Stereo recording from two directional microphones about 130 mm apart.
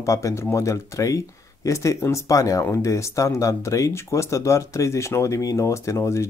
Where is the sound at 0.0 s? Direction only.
25° left (ahead or behind).